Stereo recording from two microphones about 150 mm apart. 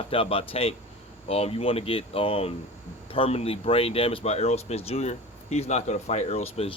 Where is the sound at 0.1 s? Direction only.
40° left (ahead or behind).